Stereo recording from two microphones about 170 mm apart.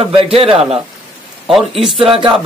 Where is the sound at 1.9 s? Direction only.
30° right (ahead or behind).